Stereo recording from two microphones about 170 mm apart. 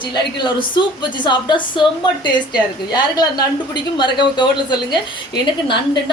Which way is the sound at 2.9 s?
25° left (ahead or behind).